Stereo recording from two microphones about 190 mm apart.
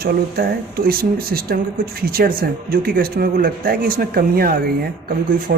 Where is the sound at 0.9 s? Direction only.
55° right (ahead or behind).